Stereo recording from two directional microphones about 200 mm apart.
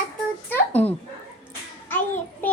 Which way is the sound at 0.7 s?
10° left (ahead or behind).